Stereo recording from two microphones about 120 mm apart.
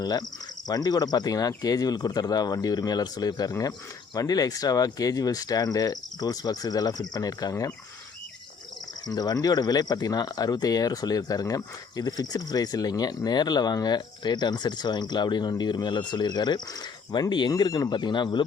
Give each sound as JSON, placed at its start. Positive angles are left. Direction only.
{"t": 0.0, "sound": "speech", "side_deg": 35}
{"t": 9.0, "sound": "speech", "side_deg": 30}